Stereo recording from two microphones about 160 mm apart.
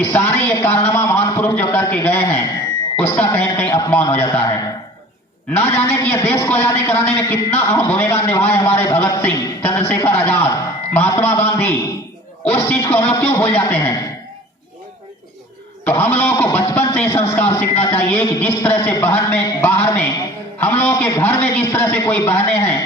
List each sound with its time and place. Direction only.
0.0 s a sound: 15° left (ahead or behind)
3.0 s a man's voice: 15° left (ahead or behind)
5.5 s a man's voice: 15° left (ahead or behind)
15.8 s a man's voice: 10° left (ahead or behind)